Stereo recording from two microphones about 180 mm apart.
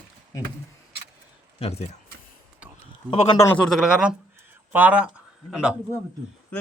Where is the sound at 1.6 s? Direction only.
35° left (ahead or behind).